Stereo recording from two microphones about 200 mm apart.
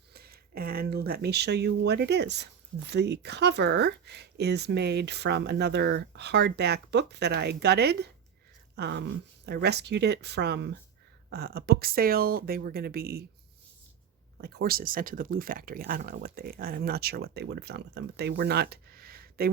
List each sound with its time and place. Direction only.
0.1 s speech: 50° right (ahead or behind)
8.7 s a sound: 55° right (ahead or behind)
9.5 s speech: 55° right (ahead or behind)
14.4 s speech: 50° right (ahead or behind)